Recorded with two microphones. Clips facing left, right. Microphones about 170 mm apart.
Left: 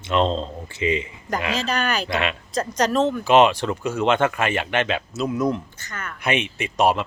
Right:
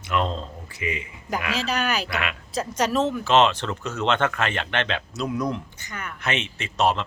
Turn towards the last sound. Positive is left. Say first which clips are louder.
# left 3 dB
turn(degrees=10)  # may be behind; listen again after turning